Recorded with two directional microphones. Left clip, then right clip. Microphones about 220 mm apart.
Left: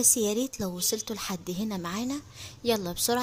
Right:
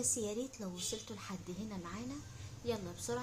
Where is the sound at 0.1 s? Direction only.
45° left (ahead or behind).